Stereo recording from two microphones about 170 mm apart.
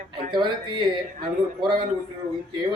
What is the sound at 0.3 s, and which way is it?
Speech, 25° right (ahead or behind).